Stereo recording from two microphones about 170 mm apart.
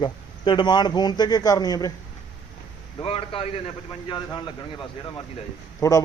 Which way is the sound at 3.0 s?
35° left (ahead or behind).